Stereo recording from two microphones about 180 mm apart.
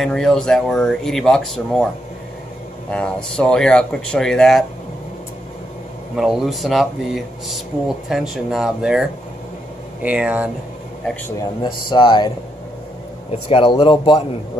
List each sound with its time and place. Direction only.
0.0 s speech: 5° left (ahead or behind)
2.9 s speech: 5° left (ahead or behind)
6.1 s speech: centre (ahead or behind)
8.1 s speech: centre (ahead or behind)
10.0 s speech: 5° right (ahead or behind)
11.6 s speech: 25° left (ahead or behind)
13.5 s speech: 30° left (ahead or behind)